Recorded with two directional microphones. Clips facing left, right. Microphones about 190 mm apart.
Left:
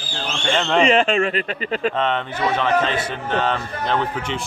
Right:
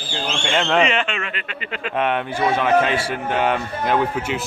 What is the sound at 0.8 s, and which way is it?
Speech, 35° left (ahead or behind).